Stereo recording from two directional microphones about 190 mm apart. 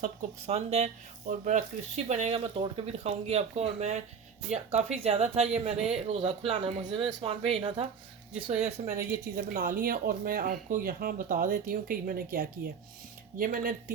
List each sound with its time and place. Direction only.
0.0 s speech: 40° right (ahead or behind)
9.5 s speech: 45° right (ahead or behind)